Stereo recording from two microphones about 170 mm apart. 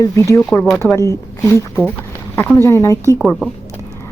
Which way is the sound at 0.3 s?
5° left (ahead or behind).